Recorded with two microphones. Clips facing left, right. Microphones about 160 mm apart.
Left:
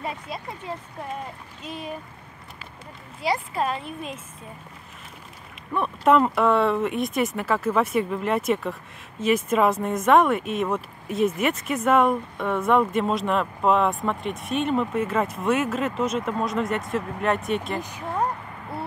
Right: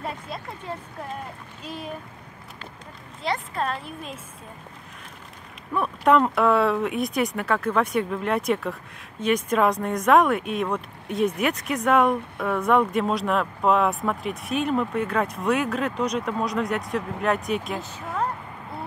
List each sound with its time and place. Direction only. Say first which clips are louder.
0.0 s speech: left 1 dB; centre (ahead or behind)
3.2 s speech: left 2 dB; 5° left (ahead or behind)
5.7 s speech: even; centre (ahead or behind)
17.7 s speech: left 2 dB; 15° left (ahead or behind)